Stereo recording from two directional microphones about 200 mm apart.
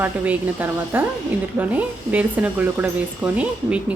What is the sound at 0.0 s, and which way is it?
Speech, 10° right (ahead or behind).